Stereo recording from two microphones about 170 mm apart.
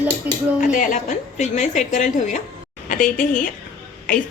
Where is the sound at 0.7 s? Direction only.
50° left (ahead or behind).